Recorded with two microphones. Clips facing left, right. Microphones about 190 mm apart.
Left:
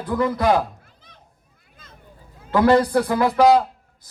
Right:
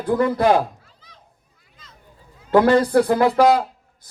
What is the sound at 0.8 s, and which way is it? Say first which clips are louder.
Children playing: even; 55° left (ahead or behind).